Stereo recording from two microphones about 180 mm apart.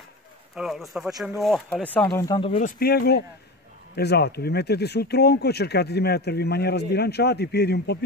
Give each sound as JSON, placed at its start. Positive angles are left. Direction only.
{"t": 0.6, "sound": "speech", "side_deg": 0}
{"t": 2.0, "sound": "speech", "side_deg": 20}
{"t": 2.6, "sound": "speech", "side_deg": 60}